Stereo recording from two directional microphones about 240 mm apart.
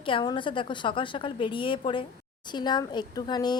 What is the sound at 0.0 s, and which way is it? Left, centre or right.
A woman's voice, left.